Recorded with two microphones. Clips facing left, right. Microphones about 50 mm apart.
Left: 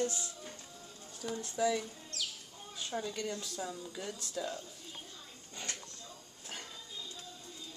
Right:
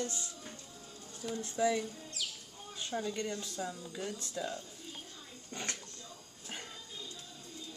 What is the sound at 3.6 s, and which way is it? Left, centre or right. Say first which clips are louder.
Speech: right 1 dB; centre.